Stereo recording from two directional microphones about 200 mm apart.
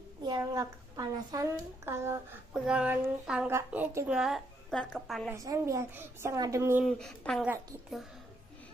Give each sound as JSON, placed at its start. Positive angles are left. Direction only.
{"t": 0.2, "sound": "speech", "side_deg": -20}
{"t": 4.2, "sound": "speech", "side_deg": 0}
{"t": 5.3, "sound": "speech", "side_deg": -15}
{"t": 6.9, "sound": "speech", "side_deg": 0}